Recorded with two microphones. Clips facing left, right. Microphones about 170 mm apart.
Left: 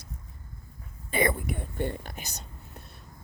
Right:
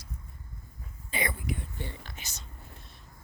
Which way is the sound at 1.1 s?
50° left (ahead or behind).